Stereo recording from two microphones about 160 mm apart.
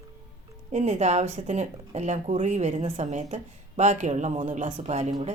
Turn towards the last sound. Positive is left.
turn(degrees=-45)  # may be behind; listen again after turning